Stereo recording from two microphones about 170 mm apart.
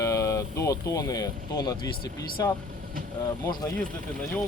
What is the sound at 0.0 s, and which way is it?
Speech, 15° left (ahead or behind).